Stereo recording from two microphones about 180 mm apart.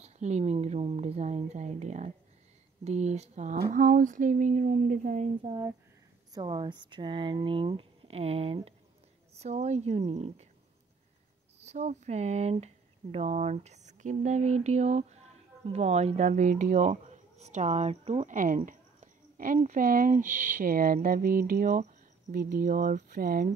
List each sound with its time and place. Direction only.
0.0 s speech: 40° right (ahead or behind)
5.4 s speech: 15° right (ahead or behind); by 10.5 s 40° right (ahead or behind)
11.6 s speech: 40° right (ahead or behind); by 23.5 s 55° right (ahead or behind)